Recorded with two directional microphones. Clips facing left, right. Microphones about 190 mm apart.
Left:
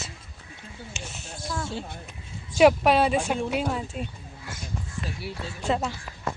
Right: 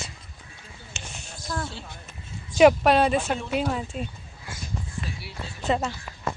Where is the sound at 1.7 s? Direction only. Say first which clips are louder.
Left 6 dB; 55° left (ahead or behind).